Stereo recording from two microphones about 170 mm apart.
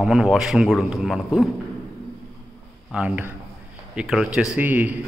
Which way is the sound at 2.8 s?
5° right (ahead or behind).